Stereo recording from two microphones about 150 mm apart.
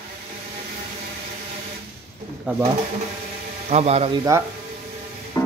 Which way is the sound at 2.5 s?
10° right (ahead or behind).